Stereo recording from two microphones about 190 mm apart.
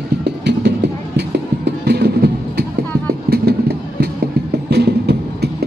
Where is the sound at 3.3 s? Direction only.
60° right (ahead or behind).